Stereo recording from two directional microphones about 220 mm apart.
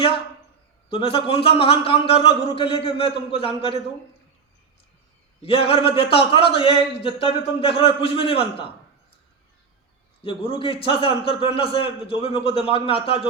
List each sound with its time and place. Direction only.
0.9 s a man's voice: 25° left (ahead or behind)
5.4 s a man's voice: 25° left (ahead or behind)
10.2 s a man's voice: 25° left (ahead or behind)